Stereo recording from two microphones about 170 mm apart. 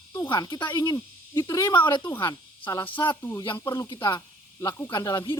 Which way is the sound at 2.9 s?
30° left (ahead or behind).